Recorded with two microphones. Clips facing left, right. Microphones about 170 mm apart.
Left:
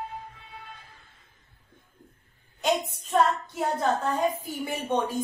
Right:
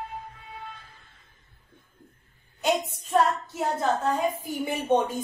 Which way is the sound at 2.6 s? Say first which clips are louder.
Right 1 dB; 5° right (ahead or behind).